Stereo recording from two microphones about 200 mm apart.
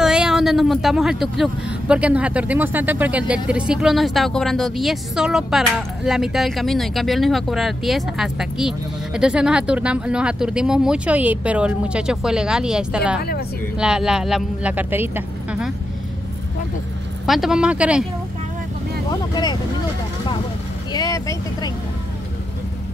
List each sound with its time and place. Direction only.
0.0 s speech: 5° right (ahead or behind)
17.3 s speech: centre (ahead or behind)
19.3 s speech: 20° left (ahead or behind)
20.9 s speech: 20° left (ahead or behind)